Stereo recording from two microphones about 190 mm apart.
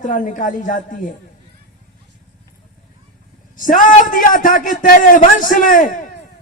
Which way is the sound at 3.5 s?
45° left (ahead or behind).